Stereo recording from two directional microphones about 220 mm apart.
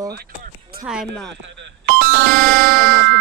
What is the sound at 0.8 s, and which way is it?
Speech, centre (ahead or behind).